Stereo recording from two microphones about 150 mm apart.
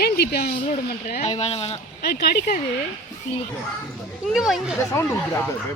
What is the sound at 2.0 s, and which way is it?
Speech, 90° left.